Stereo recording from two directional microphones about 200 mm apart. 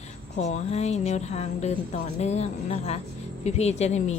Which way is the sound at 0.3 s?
35° left (ahead or behind).